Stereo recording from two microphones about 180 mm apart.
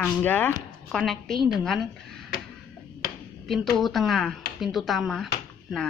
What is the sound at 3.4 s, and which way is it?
A woman's voice, centre (ahead or behind).